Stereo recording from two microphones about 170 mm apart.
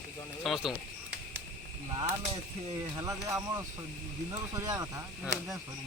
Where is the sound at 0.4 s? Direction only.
Centre (ahead or behind).